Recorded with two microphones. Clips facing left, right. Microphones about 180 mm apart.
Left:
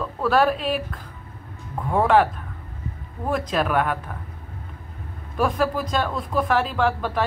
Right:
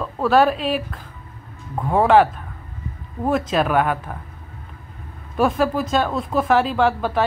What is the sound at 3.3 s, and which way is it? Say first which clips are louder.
Speech: right 3 dB; 5° right (ahead or behind).